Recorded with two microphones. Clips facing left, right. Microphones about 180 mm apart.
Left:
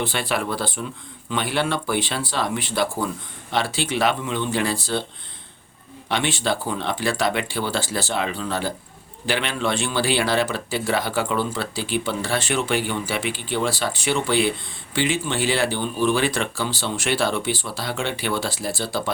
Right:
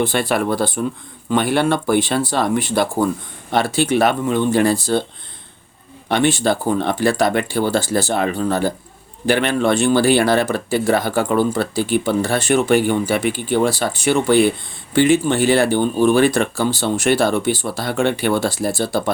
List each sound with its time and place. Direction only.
0.0 s speech: 45° right (ahead or behind)
6.1 s speech: 45° right (ahead or behind)